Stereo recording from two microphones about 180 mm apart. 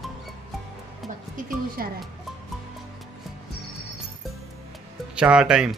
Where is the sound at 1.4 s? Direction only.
50° right (ahead or behind).